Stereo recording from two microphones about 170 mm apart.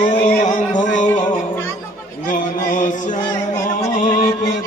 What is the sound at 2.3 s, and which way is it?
Music, 50° left (ahead or behind).